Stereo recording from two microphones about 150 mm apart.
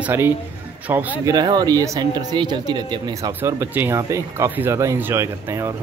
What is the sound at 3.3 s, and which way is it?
Speech, 15° right (ahead or behind).